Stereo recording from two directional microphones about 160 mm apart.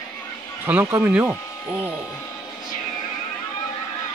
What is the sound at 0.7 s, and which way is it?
Speech, 15° right (ahead or behind).